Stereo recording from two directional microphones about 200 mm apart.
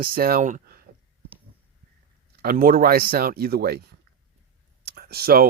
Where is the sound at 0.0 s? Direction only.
50° right (ahead or behind).